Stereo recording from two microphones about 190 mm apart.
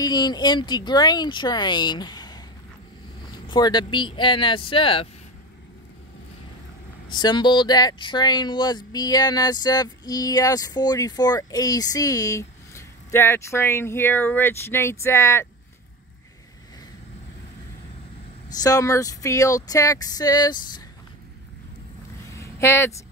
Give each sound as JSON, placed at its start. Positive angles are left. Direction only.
{"t": 0.0, "sound": "speech", "side_deg": 20}
{"t": 7.1, "sound": "speech", "side_deg": 20}
{"t": 18.5, "sound": "speech", "side_deg": 20}
{"t": 22.3, "sound": "a sound", "side_deg": 15}